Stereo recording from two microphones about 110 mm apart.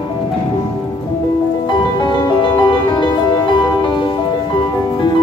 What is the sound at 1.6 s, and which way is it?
Music, 45° left (ahead or behind).